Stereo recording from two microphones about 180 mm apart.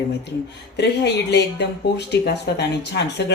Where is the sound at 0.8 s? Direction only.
70° left (ahead or behind).